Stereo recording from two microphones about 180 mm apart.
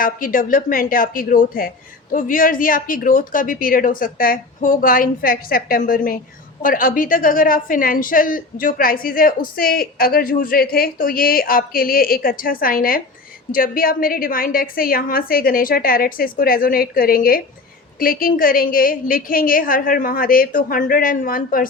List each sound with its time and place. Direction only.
0.0 s a woman's voice: 50° left (ahead or behind)